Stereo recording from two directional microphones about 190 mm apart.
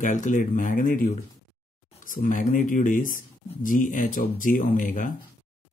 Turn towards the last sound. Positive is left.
turn(degrees=45)  # may be behind; listen again after turning